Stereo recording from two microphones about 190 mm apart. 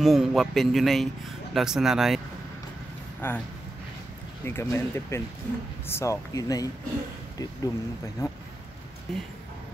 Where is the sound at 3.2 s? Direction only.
10° left (ahead or behind).